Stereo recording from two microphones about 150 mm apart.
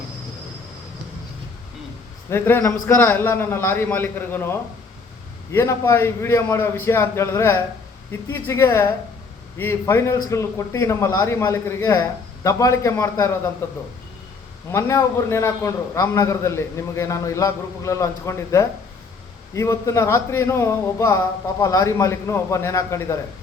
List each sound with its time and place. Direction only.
2.3 s a man's voice: 15° left (ahead or behind)
14.7 s a man's voice: 20° left (ahead or behind)